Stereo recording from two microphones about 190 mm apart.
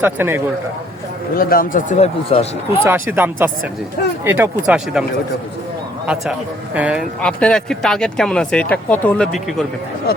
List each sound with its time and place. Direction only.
0.0 s speech: 10° right (ahead or behind)
1.4 s speech: 50° left (ahead or behind); by 2.8 s 30° left (ahead or behind)
2.8 s speech: 10° right (ahead or behind)
6.7 s speech: 5° right (ahead or behind)
7.2 s speech: 5° left (ahead or behind)